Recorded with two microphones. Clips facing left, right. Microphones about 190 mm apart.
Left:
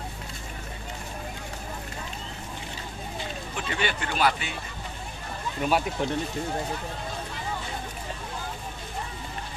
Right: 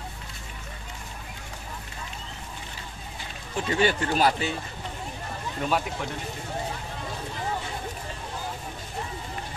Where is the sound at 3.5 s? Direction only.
35° right (ahead or behind).